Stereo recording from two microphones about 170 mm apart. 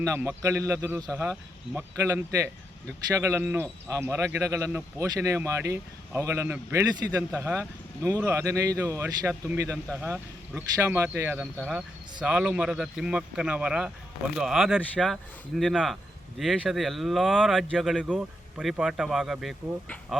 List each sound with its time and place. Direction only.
0.0 s speech: 15° right (ahead or behind)
11.5 s speech: 5° left (ahead or behind)